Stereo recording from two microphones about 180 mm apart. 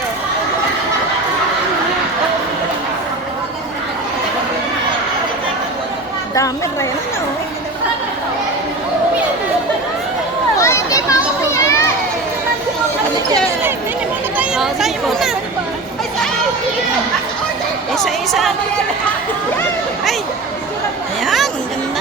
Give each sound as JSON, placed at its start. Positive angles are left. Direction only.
{"t": 10.6, "sound": "children playing", "side_deg": 15}
{"t": 14.3, "sound": "a sound", "side_deg": -5}
{"t": 17.9, "sound": "a woman's voice", "side_deg": 0}
{"t": 21.2, "sound": "chatter", "side_deg": 0}